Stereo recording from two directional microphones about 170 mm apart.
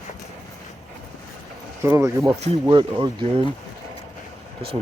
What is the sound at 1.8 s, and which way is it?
Speech, 15° right (ahead or behind).